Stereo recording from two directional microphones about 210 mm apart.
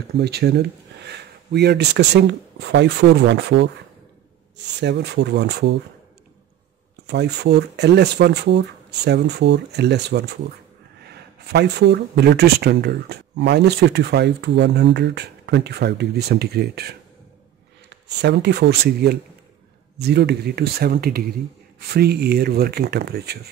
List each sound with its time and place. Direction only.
0.2 s speech: 50° right (ahead or behind)
4.7 s speech: 55° right (ahead or behind)
7.1 s speech: 50° right (ahead or behind)